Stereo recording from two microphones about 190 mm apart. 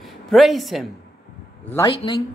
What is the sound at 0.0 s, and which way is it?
Speech, centre (ahead or behind).